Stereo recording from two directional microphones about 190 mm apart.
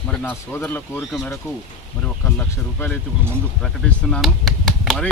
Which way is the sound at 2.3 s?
10° left (ahead or behind).